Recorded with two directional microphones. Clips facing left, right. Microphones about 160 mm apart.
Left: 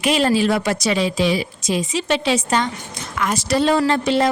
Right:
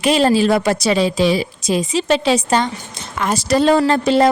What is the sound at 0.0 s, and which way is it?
A woman's voice, 30° right (ahead or behind).